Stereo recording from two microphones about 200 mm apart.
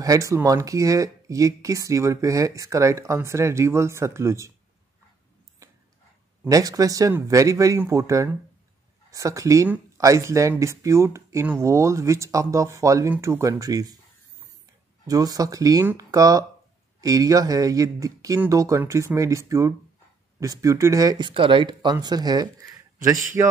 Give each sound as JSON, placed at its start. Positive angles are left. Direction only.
{"t": 0.0, "sound": "speech", "side_deg": -15}
{"t": 5.6, "sound": "a sound", "side_deg": -15}
{"t": 6.4, "sound": "speech", "side_deg": -15}
{"t": 15.0, "sound": "speech", "side_deg": -20}